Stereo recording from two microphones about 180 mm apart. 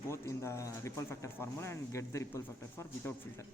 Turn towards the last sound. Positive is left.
turn(degrees=15)  # may be behind; listen again after turning